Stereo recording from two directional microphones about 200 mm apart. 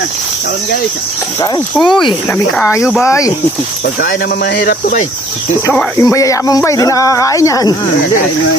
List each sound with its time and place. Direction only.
1.8 s speech: 25° left (ahead or behind)
4.0 s speech: 45° left (ahead or behind)
5.6 s speech: 10° left (ahead or behind)